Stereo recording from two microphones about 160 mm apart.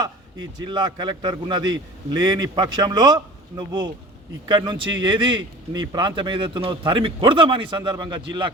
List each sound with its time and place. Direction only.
0.0 s a man's voice: 30° right (ahead or behind)